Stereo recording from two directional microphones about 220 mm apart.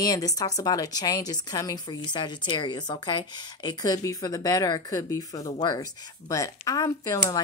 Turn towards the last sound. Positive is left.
turn(degrees=15)  # may be behind; listen again after turning